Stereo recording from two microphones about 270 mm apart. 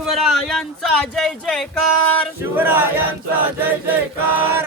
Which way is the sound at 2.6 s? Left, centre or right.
Centre.